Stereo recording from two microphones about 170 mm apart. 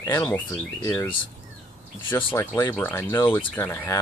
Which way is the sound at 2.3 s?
15° left (ahead or behind).